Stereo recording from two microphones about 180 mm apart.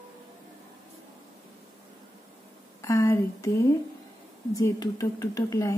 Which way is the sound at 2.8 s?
20° left (ahead or behind).